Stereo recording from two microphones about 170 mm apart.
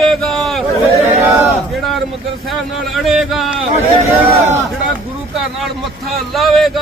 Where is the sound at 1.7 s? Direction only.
Centre (ahead or behind).